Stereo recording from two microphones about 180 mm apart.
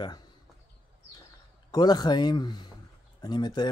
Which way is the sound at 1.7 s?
20° left (ahead or behind).